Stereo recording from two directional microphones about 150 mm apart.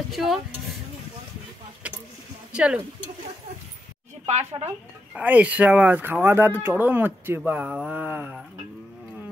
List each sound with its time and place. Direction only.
0.1 s speech: centre (ahead or behind)
2.5 s speech: 5° right (ahead or behind)
4.3 s speech: 50° right (ahead or behind)
5.1 s speech: 10° right (ahead or behind)